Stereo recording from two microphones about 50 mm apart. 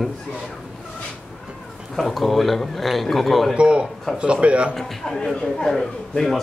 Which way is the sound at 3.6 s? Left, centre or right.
Right.